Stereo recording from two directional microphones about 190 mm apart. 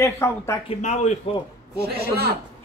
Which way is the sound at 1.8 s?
55° right (ahead or behind).